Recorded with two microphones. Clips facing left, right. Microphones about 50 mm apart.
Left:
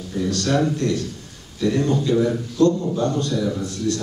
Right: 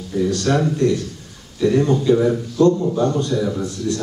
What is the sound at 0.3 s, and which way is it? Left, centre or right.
A man's voice, centre.